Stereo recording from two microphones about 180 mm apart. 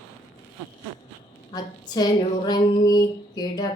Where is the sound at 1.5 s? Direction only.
20° left (ahead or behind).